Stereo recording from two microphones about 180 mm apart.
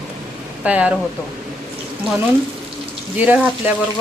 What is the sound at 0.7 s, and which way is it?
Speech, 10° right (ahead or behind).